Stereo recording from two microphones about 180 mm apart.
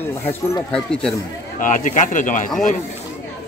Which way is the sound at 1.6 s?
45° left (ahead or behind).